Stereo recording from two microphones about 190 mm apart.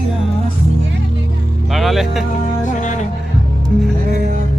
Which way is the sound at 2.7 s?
40° left (ahead or behind).